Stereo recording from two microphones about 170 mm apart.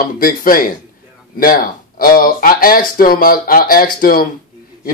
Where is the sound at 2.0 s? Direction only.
55° left (ahead or behind).